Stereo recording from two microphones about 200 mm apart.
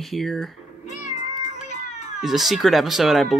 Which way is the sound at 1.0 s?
35° left (ahead or behind).